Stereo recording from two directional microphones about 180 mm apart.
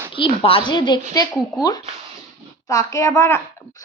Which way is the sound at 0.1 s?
30° left (ahead or behind).